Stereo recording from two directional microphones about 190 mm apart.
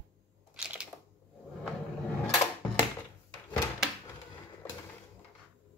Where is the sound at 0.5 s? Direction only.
5° right (ahead or behind).